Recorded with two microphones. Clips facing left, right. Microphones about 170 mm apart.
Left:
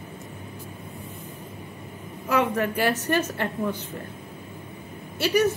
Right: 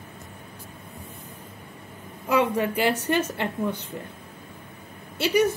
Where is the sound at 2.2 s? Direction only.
20° right (ahead or behind).